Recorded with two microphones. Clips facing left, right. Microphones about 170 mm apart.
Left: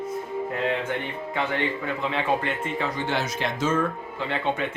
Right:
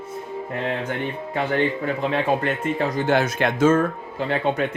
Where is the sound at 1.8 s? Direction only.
40° right (ahead or behind).